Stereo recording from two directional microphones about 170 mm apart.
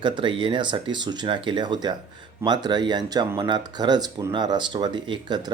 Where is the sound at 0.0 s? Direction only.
30° right (ahead or behind).